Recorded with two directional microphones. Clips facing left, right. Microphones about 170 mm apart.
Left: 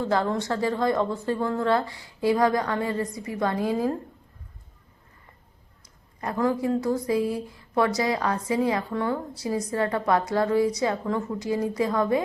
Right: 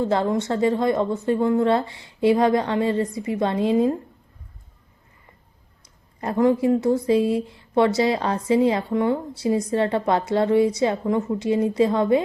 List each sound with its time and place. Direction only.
0.0 s speech: 20° right (ahead or behind)
6.1 s speech: 25° right (ahead or behind)